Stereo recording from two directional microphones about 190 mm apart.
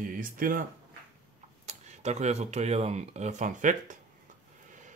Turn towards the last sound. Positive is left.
turn(degrees=-40)  # may be behind; listen again after turning